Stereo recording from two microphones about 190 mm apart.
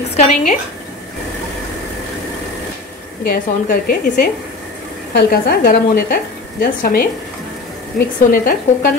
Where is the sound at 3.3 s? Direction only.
50° left (ahead or behind).